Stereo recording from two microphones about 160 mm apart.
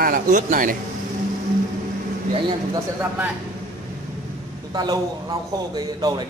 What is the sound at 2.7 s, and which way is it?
Speech, 15° right (ahead or behind).